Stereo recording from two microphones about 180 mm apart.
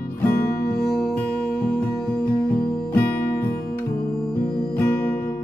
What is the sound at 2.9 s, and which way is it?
Music, 10° left (ahead or behind).